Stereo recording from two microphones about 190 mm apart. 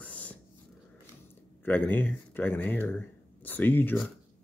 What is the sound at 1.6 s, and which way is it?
Speech, 10° left (ahead or behind).